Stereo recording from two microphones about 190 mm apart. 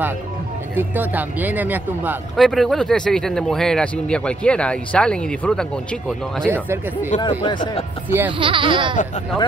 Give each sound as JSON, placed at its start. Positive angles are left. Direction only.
{"t": 0.7, "sound": "speech", "side_deg": -10}
{"t": 2.3, "sound": "speech", "side_deg": 0}
{"t": 6.5, "sound": "speech", "side_deg": -10}
{"t": 7.2, "sound": "speech", "side_deg": 25}
{"t": 8.3, "sound": "speech", "side_deg": -25}